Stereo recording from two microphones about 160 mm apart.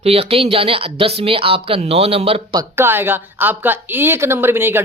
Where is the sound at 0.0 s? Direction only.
40° right (ahead or behind).